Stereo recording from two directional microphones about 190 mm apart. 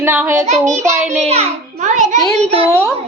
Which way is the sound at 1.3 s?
35° right (ahead or behind).